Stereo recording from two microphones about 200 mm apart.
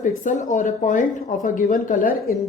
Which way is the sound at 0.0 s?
40° left (ahead or behind).